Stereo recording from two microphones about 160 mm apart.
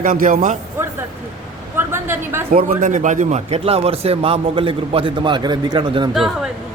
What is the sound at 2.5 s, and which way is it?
Speech, 60° right (ahead or behind).